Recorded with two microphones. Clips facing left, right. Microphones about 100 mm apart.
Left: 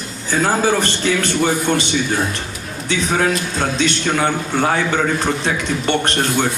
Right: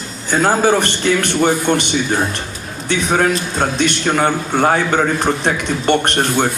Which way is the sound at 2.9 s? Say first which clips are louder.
Right 2 dB; 50° right (ahead or behind).